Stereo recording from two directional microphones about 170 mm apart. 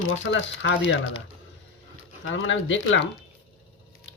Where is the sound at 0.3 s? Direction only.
90° left.